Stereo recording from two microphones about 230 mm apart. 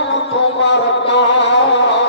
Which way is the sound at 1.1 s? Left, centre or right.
Left.